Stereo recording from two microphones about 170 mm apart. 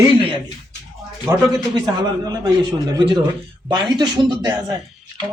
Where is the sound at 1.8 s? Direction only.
25° right (ahead or behind).